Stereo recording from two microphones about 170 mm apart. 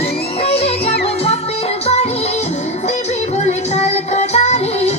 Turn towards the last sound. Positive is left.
turn(degrees=40)  # may be behind; listen again after turning